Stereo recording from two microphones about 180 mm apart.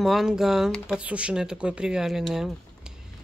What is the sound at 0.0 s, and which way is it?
Speech, centre (ahead or behind).